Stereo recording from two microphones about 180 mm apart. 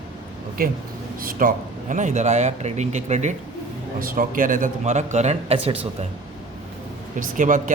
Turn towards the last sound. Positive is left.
turn(degrees=-45)  # may be behind; listen again after turning